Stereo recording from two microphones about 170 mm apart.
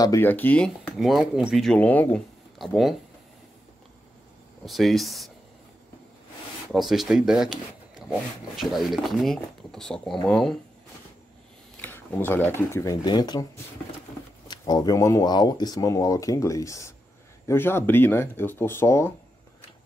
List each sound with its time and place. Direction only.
0.0 s speech: 15° left (ahead or behind)
0.9 s speech: centre (ahead or behind)
4.6 s speech: centre (ahead or behind)
6.7 s speech: centre (ahead or behind)
11.7 s speech: 10° left (ahead or behind)
14.5 s speech: 20° left (ahead or behind)